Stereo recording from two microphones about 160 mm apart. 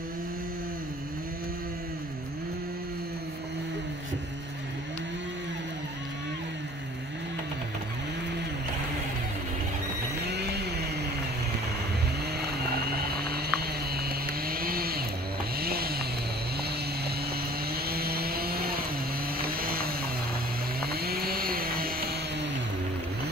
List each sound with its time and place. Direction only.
10.3 s a sound: 90° right
12.7 s vehicle: 75° right (ahead or behind)
17.6 s vehicle: 75° right (ahead or behind)